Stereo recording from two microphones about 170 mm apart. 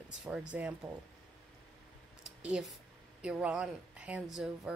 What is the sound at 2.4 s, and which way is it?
Speech, 5° right (ahead or behind).